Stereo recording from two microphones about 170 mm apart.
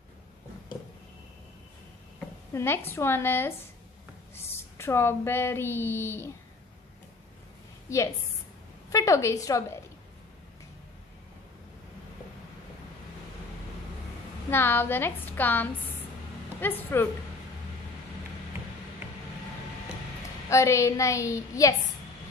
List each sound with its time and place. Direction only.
2.5 s a woman's voice: 15° left (ahead or behind)
8.9 s a woman's voice: 20° left (ahead or behind)
14.5 s a woman's voice: 15° left (ahead or behind)
20.4 s a woman's voice: 15° left (ahead or behind)